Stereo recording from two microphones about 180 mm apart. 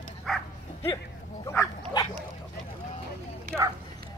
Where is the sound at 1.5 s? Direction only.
15° left (ahead or behind).